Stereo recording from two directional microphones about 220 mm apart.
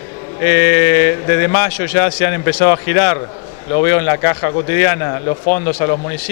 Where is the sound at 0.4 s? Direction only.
15° left (ahead or behind).